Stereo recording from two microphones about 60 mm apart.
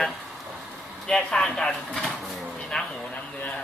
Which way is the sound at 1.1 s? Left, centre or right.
Centre.